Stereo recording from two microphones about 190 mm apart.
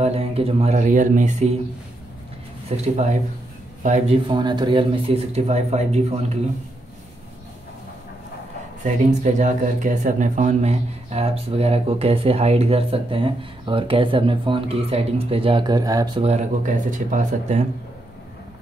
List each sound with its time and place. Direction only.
0.0 s speech: 35° right (ahead or behind)
2.7 s speech: 35° right (ahead or behind)
4.3 s speech: 25° right (ahead or behind)
8.8 s speech: 40° right (ahead or behind); by 16.1 s 20° right (ahead or behind)
16.2 s speech: 35° right (ahead or behind)